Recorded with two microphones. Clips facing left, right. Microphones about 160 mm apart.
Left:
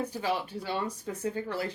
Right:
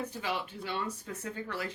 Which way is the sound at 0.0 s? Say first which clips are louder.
Left 4 dB; 35° left (ahead or behind).